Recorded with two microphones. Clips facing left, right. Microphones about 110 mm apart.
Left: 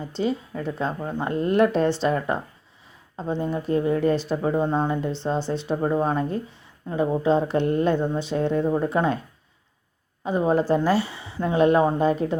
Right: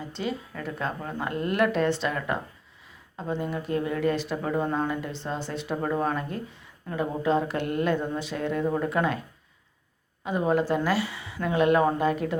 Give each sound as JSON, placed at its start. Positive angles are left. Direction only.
{"t": 0.2, "sound": "speech", "side_deg": 30}
{"t": 10.2, "sound": "speech", "side_deg": 30}